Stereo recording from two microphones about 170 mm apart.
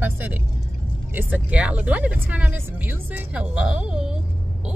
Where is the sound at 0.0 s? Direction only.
10° right (ahead or behind).